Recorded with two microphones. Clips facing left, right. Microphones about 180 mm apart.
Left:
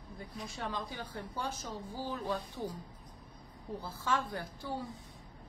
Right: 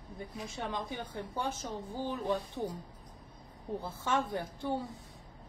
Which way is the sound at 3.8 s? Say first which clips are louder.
Right 2 dB; 20° right (ahead or behind).